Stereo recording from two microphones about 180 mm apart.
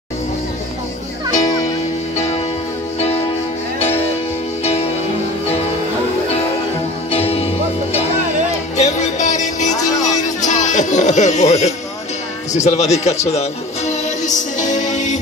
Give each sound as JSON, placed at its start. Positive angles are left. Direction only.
{"t": 1.3, "sound": "music", "side_deg": 40}
{"t": 7.1, "sound": "music", "side_deg": 35}
{"t": 12.5, "sound": "speech", "side_deg": 35}